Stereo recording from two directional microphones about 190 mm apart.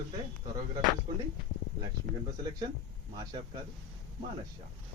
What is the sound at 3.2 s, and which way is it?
Speech, 25° right (ahead or behind).